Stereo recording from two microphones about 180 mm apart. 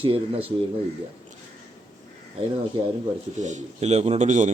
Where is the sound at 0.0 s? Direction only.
30° right (ahead or behind).